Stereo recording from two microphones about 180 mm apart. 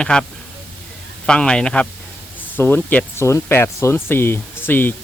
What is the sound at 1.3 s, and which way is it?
Speech, 5° left (ahead or behind).